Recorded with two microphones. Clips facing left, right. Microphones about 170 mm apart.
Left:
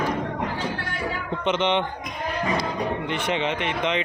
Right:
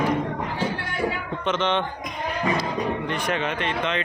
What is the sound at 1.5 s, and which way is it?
Speech, 15° left (ahead or behind).